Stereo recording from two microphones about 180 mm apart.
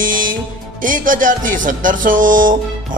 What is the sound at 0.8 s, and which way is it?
Speech, 50° right (ahead or behind).